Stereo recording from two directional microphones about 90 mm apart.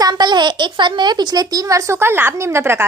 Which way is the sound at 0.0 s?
50° right (ahead or behind).